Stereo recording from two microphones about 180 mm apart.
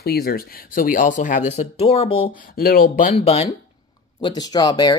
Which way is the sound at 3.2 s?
35° left (ahead or behind).